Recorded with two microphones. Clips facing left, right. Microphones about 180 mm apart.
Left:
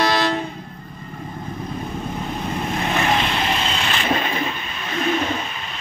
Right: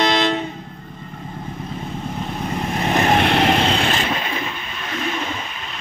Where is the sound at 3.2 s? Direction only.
65° right (ahead or behind).